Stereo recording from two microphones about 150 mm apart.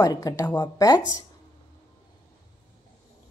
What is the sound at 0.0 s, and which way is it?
A woman's voice, 25° left (ahead or behind).